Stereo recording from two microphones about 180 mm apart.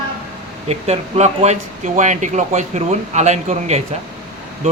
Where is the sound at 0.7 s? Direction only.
35° right (ahead or behind).